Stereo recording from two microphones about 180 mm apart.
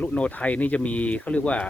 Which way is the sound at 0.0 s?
5° left (ahead or behind).